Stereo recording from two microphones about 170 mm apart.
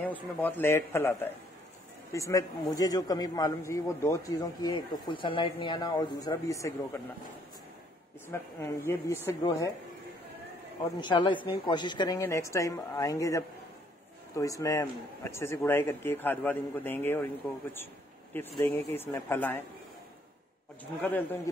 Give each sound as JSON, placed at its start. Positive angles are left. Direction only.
{"t": 0.0, "sound": "a man's voice", "side_deg": 10}
{"t": 8.3, "sound": "a man's voice", "side_deg": 15}
{"t": 10.8, "sound": "a man's voice", "side_deg": 25}
{"t": 18.3, "sound": "a man's voice", "side_deg": 10}
{"t": 21.0, "sound": "a man's voice", "side_deg": 10}